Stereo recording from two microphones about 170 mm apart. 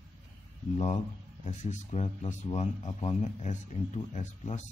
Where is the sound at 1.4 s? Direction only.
45° left (ahead or behind).